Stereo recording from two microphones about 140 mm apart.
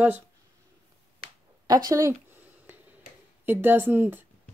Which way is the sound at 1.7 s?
25° right (ahead or behind).